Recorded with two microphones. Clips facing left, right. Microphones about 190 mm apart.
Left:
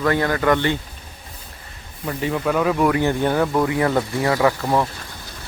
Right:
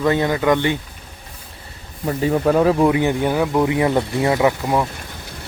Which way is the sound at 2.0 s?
35° right (ahead or behind).